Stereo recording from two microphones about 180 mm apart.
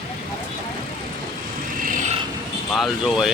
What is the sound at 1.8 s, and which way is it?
Vehicle, 50° right (ahead or behind).